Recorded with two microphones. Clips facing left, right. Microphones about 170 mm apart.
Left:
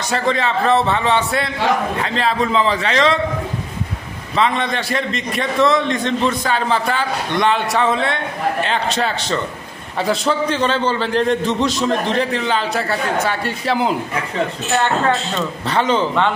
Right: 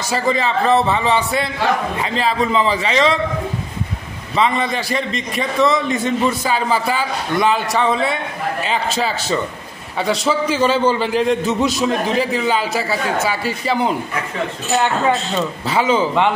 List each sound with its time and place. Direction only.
0.1 s a man's voice: 5° right (ahead or behind)
4.4 s a man's voice: 5° right (ahead or behind)